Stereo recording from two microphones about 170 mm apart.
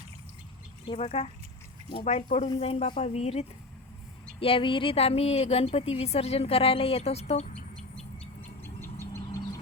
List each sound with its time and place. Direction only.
0.9 s a woman's voice: 40° left (ahead or behind)
7.9 s bird: 10° left (ahead or behind)
9.2 s vehicle: 20° left (ahead or behind)